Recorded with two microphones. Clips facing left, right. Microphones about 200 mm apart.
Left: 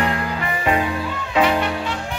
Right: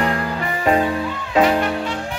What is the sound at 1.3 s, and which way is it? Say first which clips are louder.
Music: right 2 dB; 40° right (ahead or behind).